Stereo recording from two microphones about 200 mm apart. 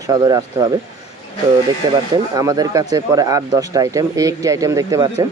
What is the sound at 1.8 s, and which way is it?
Speech, 20° right (ahead or behind).